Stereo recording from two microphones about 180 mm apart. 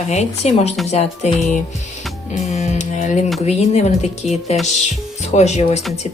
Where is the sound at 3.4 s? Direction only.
35° left (ahead or behind).